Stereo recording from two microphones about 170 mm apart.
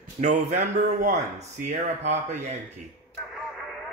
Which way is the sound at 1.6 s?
40° right (ahead or behind).